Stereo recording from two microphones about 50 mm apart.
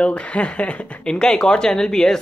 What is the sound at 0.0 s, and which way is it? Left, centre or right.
Speech, left.